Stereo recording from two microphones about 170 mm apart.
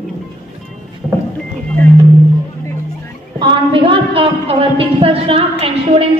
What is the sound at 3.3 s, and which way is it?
A woman's voice, 30° right (ahead or behind).